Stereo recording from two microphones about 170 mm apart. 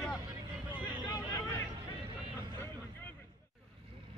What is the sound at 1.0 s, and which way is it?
Vehicle, 20° left (ahead or behind).